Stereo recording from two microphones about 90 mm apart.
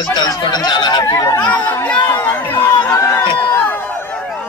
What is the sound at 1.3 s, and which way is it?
Speech, 15° left (ahead or behind).